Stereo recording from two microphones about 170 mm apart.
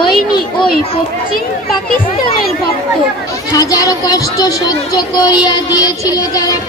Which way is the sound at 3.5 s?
20° left (ahead or behind).